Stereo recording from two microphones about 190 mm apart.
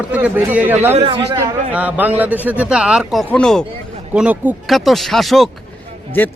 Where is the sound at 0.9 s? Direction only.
30° right (ahead or behind).